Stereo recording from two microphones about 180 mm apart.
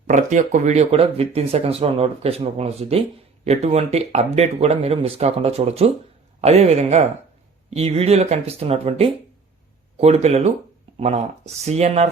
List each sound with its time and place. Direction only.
0.1 s speech: 45° right (ahead or behind)